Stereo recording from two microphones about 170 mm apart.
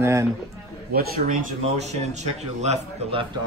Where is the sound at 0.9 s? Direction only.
60° right (ahead or behind).